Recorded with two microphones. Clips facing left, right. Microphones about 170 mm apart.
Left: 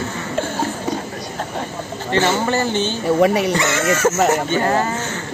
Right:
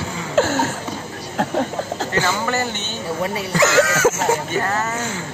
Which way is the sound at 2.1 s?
30° left (ahead or behind).